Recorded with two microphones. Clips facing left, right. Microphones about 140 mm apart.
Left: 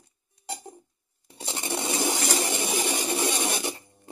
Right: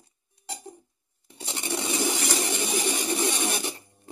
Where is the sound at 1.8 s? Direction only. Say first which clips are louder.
Left 1 dB; 45° left (ahead or behind).